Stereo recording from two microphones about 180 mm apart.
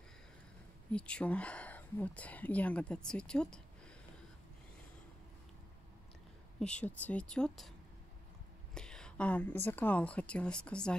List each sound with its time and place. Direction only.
0.9 s speech: 5° left (ahead or behind)
6.6 s speech: 5° left (ahead or behind)
8.7 s speech: 5° left (ahead or behind)